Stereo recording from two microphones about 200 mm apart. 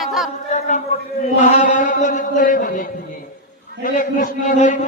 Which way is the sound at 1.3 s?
40° left (ahead or behind).